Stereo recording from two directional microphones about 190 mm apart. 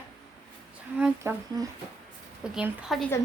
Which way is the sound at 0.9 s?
10° right (ahead or behind).